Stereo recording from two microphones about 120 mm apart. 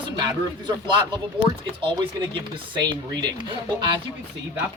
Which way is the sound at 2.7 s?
35° right (ahead or behind).